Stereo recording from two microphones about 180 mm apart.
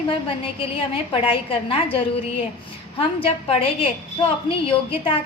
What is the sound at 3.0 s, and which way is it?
A woman's voice, 30° left (ahead or behind).